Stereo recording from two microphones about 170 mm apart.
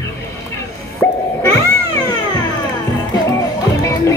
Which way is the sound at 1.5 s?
20° left (ahead or behind).